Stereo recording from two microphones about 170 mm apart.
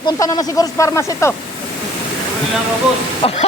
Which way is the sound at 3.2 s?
35° left (ahead or behind).